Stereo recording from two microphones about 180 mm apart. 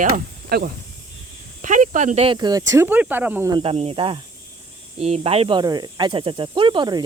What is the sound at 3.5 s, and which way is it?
Speech, 30° right (ahead or behind).